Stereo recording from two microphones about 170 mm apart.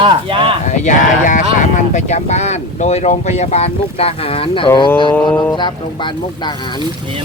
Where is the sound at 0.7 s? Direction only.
45° left (ahead or behind).